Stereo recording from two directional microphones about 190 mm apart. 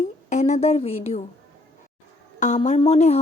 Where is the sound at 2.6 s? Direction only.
35° left (ahead or behind).